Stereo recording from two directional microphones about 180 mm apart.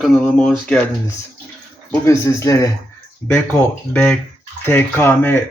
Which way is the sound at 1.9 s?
15° left (ahead or behind).